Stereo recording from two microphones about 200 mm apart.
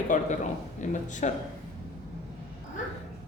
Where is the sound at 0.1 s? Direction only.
40° left (ahead or behind).